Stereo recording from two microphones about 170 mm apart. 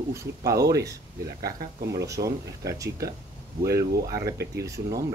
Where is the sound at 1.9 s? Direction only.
20° right (ahead or behind).